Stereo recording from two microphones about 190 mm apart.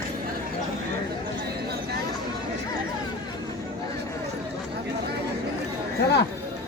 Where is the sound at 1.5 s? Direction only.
60° right (ahead or behind).